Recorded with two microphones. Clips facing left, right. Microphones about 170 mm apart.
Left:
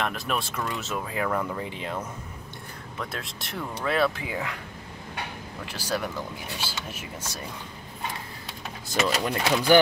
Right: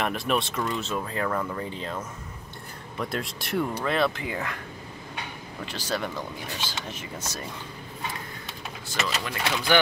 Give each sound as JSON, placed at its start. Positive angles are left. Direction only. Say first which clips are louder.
{"t": 0.0, "sound": "speech", "louder": "right 3 dB", "side_deg": 0}
{"t": 3.0, "sound": "speech", "louder": "right 5 dB", "side_deg": 0}
{"t": 5.7, "sound": "speech", "louder": "left 1 dB", "side_deg": 10}
{"t": 9.0, "sound": "speech", "louder": "left 4 dB", "side_deg": 40}